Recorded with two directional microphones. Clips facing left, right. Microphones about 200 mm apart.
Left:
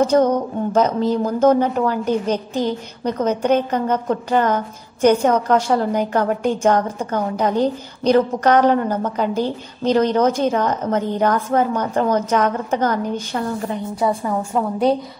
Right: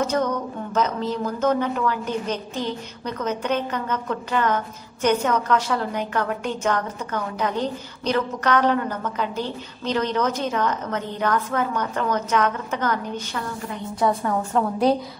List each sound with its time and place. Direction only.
0.0 s a woman's voice: 30° left (ahead or behind)
13.9 s a woman's voice: 10° left (ahead or behind)